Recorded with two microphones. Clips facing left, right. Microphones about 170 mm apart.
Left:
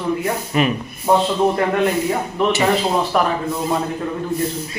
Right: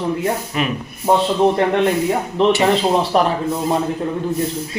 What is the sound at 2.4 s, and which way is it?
Speech, 25° right (ahead or behind).